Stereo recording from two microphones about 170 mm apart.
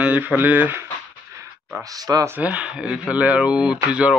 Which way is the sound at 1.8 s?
20° right (ahead or behind).